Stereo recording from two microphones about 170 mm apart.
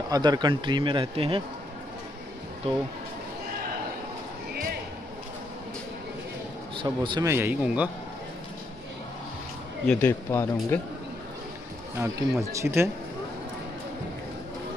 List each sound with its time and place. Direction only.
0.1 s speech: 25° right (ahead or behind)
6.8 s speech: 30° right (ahead or behind)
7.2 s speech: 15° right (ahead or behind)
9.8 s speech: 15° left (ahead or behind)
12.0 s speech: 15° right (ahead or behind)